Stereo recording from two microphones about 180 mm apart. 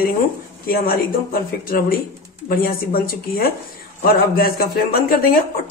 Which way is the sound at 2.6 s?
55° left (ahead or behind).